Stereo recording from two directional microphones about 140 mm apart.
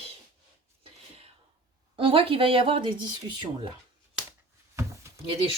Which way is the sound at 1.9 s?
40° right (ahead or behind).